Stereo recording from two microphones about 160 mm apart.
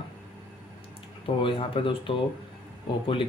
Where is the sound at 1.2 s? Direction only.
35° left (ahead or behind).